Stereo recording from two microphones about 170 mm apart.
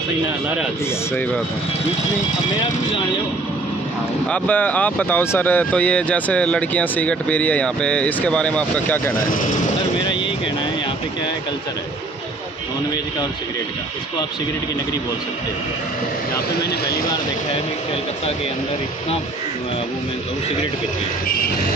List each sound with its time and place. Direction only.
4.3 s speech: 10° left (ahead or behind)
16.5 s speech: 65° left (ahead or behind)